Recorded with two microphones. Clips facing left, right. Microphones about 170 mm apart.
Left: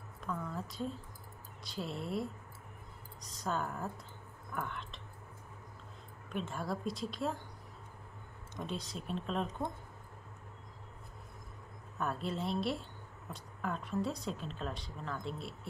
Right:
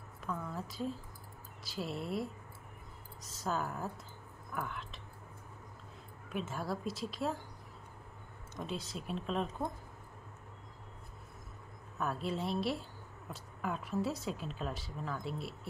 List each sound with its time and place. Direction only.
0.2 s a woman's voice: 5° right (ahead or behind)
6.2 s speech: 5° right (ahead or behind)
8.5 s speech: centre (ahead or behind)
12.0 s speech: centre (ahead or behind)